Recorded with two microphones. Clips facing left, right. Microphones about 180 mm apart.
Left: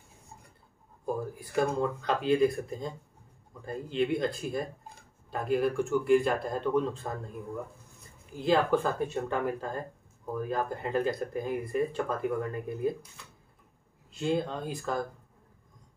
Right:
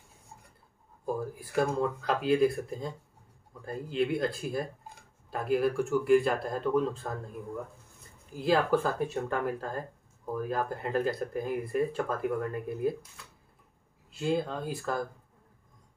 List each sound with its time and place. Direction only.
1.0 s speech: 5° right (ahead or behind)
8.4 s speech: 5° right (ahead or behind)